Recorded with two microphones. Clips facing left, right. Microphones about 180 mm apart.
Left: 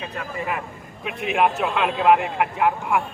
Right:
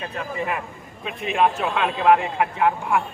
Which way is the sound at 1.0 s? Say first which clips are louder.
Even; 5° left (ahead or behind).